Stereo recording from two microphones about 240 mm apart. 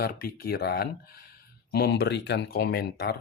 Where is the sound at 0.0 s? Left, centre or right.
Left.